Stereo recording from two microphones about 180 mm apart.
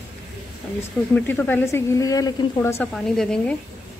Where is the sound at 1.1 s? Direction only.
10° left (ahead or behind).